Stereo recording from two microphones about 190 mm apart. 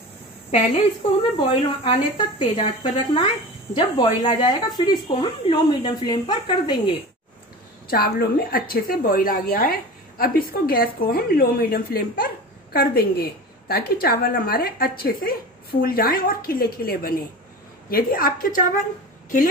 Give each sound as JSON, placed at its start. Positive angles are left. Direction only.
{"t": 0.5, "sound": "speech", "side_deg": 30}
{"t": 7.9, "sound": "a woman's voice", "side_deg": 50}